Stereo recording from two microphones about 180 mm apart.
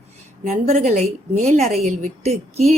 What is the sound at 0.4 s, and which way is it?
A woman's voice, 40° right (ahead or behind).